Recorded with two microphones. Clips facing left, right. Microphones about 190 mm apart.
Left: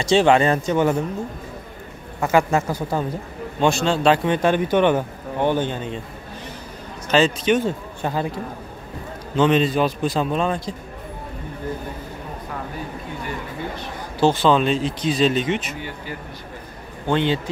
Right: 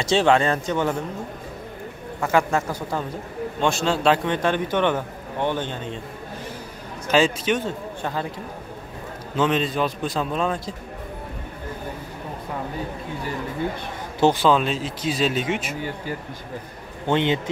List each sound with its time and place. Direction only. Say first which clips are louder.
0.0 s speech: left 3 dB; centre (ahead or behind)
2.3 s speech: left 3 dB; 10° left (ahead or behind)
3.6 s a man's voice: left 3 dB; centre (ahead or behind)
4.3 s speech: left 4 dB; 10° left (ahead or behind)
7.1 s speech: left 2 dB; 10° right (ahead or behind)
7.5 s speech: left 5 dB; 10° left (ahead or behind)
9.4 s a man's voice: left 4 dB; centre (ahead or behind)
14.2 s speech: left 1 dB; 10° right (ahead or behind)
17.1 s a man's voice: left 1 dB; 20° right (ahead or behind)